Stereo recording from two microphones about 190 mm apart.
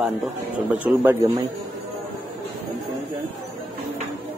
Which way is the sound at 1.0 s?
15° right (ahead or behind).